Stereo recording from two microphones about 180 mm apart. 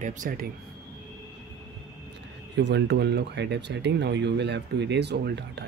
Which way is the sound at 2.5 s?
70° right (ahead or behind).